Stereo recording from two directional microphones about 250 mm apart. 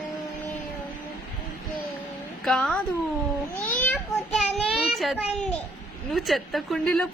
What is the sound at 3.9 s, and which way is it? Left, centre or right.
A child's voice, centre.